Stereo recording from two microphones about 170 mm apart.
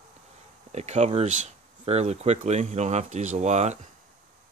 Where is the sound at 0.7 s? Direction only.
40° right (ahead or behind).